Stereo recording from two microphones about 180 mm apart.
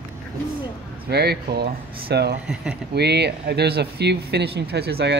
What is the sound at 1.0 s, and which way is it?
Speech, 65° right (ahead or behind).